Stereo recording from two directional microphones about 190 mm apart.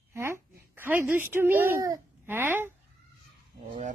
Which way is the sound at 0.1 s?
15° right (ahead or behind).